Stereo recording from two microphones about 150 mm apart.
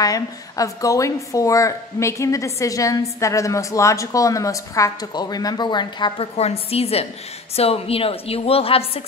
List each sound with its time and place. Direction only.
0.0 s a woman's voice: 25° left (ahead or behind); by 9.0 s 40° left (ahead or behind)